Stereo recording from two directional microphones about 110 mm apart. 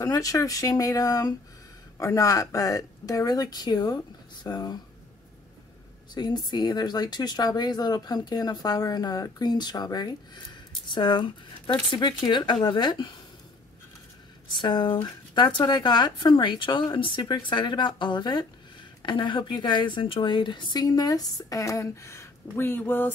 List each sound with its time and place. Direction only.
0.0 s a woman's voice: 30° left (ahead or behind)
6.1 s a woman's voice: 40° left (ahead or behind)
14.5 s a woman's voice: 45° left (ahead or behind); by 23.1 s 20° left (ahead or behind)